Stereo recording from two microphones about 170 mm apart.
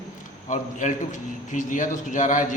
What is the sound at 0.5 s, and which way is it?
A man's voice, 45° left (ahead or behind).